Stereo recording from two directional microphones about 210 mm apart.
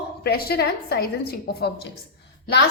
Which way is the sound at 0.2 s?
50° left (ahead or behind).